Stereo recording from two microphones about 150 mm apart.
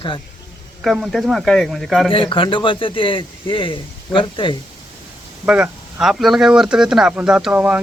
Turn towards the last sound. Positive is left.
turn(degrees=-10)  # may be behind; listen again after turning